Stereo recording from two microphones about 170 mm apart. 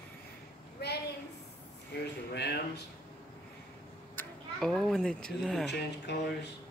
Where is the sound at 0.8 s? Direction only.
75° left (ahead or behind).